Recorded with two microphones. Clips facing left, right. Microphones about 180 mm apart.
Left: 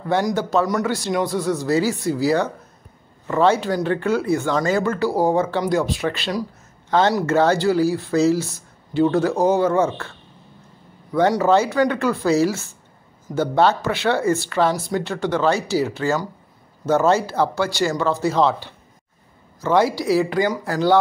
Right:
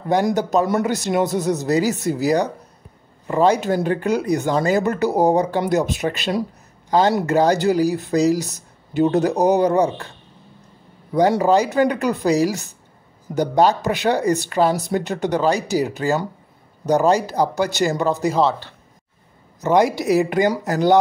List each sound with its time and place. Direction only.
0.1 s a man's voice: 20° right (ahead or behind)
11.3 s speech: 15° right (ahead or behind)
19.6 s a man's voice: 20° right (ahead or behind)